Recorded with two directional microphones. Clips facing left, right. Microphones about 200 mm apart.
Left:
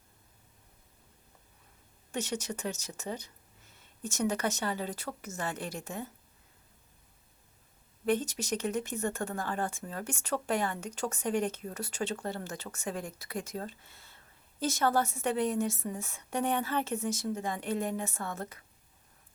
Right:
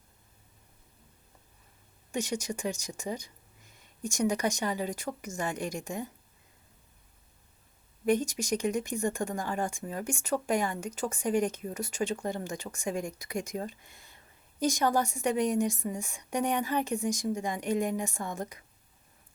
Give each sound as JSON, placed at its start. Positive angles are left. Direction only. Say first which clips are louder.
{"t": 2.1, "sound": "speech", "louder": "right 2 dB", "side_deg": -10}
{"t": 8.0, "sound": "speech", "louder": "right 3 dB", "side_deg": -10}